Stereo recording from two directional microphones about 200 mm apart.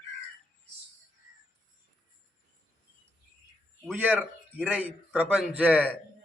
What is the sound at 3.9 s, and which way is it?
A man's voice, 10° right (ahead or behind).